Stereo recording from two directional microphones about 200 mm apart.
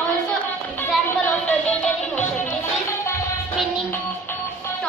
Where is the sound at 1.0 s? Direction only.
5° left (ahead or behind).